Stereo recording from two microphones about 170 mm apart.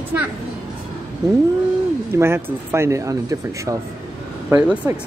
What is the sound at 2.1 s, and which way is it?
Speech, 15° right (ahead or behind).